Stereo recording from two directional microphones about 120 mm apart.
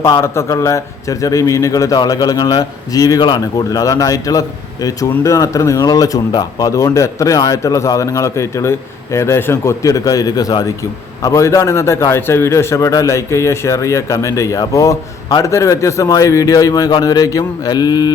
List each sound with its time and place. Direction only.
0.0 s a man's voice: 25° left (ahead or behind)